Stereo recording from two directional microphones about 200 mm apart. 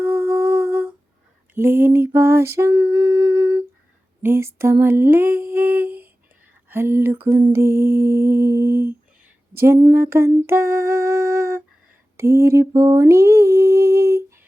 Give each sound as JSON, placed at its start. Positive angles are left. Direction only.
{"t": 0.0, "sound": "humming", "side_deg": -15}
{"t": 1.5, "sound": "lullaby", "side_deg": -10}
{"t": 2.9, "sound": "humming", "side_deg": -20}
{"t": 6.7, "sound": "lullaby", "side_deg": -10}
{"t": 12.1, "sound": "a sound", "side_deg": -15}